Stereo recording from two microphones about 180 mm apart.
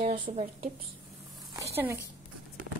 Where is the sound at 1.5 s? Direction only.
15° right (ahead or behind).